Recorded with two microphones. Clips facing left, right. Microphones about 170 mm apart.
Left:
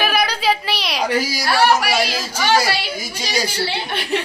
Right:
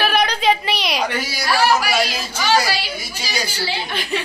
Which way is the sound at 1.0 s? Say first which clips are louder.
Left 3 dB; 35° left (ahead or behind).